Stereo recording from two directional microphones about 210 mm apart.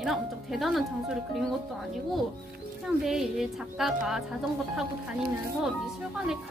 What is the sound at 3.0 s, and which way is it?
Speech, centre (ahead or behind).